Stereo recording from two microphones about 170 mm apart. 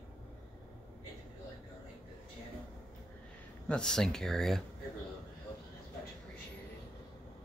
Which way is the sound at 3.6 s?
5° left (ahead or behind).